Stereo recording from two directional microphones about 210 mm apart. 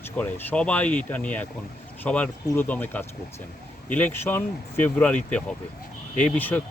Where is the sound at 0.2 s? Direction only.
10° left (ahead or behind).